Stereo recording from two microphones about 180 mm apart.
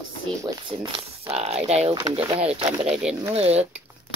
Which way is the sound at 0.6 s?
30° right (ahead or behind).